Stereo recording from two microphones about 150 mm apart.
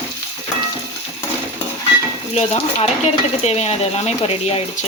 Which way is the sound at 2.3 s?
45° left (ahead or behind).